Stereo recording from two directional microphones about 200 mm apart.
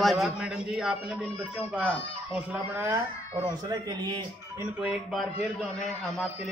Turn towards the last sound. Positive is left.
turn(degrees=0)  # may be behind; listen again after turning